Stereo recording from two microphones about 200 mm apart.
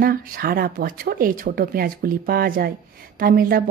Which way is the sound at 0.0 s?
45° right (ahead or behind).